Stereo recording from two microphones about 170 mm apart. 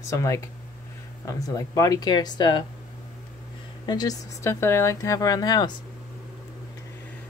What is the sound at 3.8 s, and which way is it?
Speech, 25° left (ahead or behind).